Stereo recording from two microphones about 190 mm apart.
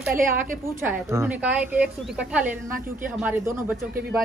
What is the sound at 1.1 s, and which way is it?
Speech, 10° right (ahead or behind).